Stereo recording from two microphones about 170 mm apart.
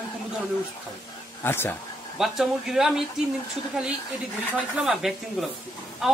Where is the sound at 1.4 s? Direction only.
15° left (ahead or behind).